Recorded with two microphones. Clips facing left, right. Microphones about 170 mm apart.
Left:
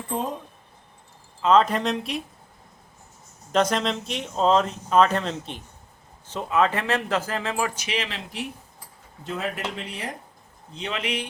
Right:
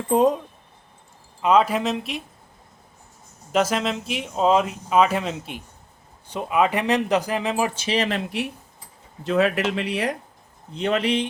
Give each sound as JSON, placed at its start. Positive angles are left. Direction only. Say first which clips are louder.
{"t": 1.4, "sound": "speech", "louder": "right 1 dB", "side_deg": -10}
{"t": 3.5, "sound": "speech", "louder": "right 1 dB", "side_deg": -5}
{"t": 7.9, "sound": "speech", "louder": "right 6 dB", "side_deg": -35}
{"t": 8.1, "sound": "speech", "louder": "right 8 dB", "side_deg": -65}
{"t": 9.2, "sound": "speech", "louder": "right 9 dB", "side_deg": -80}
{"t": 10.8, "sound": "speech", "louder": "right 9 dB", "side_deg": -55}
{"t": 11.0, "sound": "speech", "louder": "right 7 dB", "side_deg": -30}